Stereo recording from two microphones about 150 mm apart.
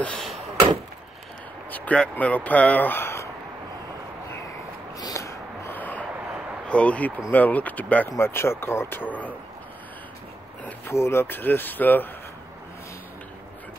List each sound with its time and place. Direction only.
0.0 s door: 5° left (ahead or behind)
1.7 s speech: 10° left (ahead or behind)
5.0 s a sound: 20° left (ahead or behind)
6.7 s speech: 10° left (ahead or behind)
10.6 s speech: 15° left (ahead or behind)